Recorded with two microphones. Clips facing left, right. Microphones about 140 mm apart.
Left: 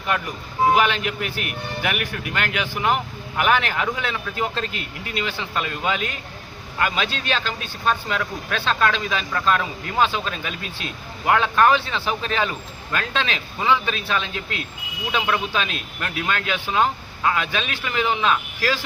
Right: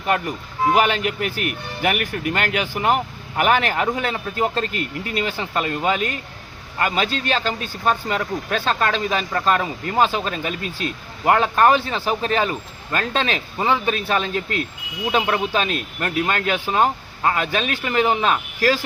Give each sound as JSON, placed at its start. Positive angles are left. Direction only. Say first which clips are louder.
{"t": 0.7, "sound": "speech", "louder": "right 3 dB", "side_deg": -45}